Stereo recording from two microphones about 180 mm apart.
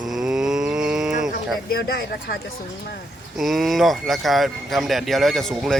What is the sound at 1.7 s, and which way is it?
Speech, 55° left (ahead or behind).